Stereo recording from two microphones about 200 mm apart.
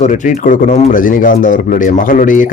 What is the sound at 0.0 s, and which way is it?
Speech, 40° left (ahead or behind).